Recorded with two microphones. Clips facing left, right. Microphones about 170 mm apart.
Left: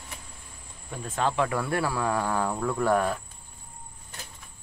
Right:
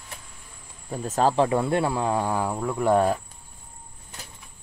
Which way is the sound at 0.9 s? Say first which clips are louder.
Right 6 dB; 35° right (ahead or behind).